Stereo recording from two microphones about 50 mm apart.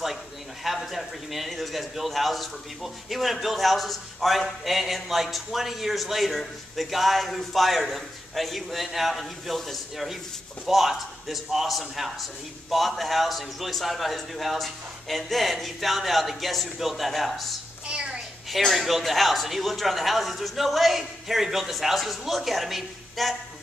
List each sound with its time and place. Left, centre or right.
0.7 s a man's voice: centre
17.8 s a sound: centre
18.5 s a man's voice: centre